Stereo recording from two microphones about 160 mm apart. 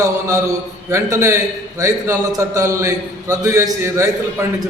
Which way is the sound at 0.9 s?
20° right (ahead or behind).